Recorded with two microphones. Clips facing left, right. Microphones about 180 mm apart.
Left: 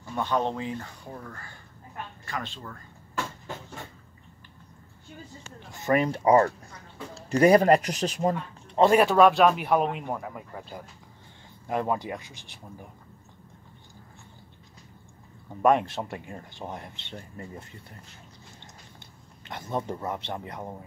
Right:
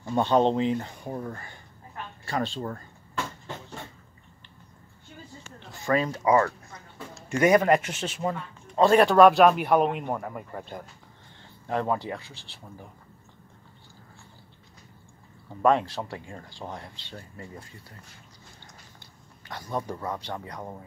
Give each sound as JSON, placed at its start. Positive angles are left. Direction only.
{"t": 0.0, "sound": "speech", "side_deg": -30}
{"t": 5.7, "sound": "speech", "side_deg": 20}
{"t": 6.0, "sound": "speech", "side_deg": 30}
{"t": 8.9, "sound": "speech", "side_deg": 5}
{"t": 11.6, "sound": "speech", "side_deg": 10}
{"t": 15.6, "sound": "speech", "side_deg": 20}
{"t": 19.4, "sound": "speech", "side_deg": 25}